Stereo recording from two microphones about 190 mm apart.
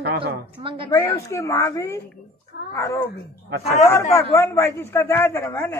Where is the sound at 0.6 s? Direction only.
25° right (ahead or behind).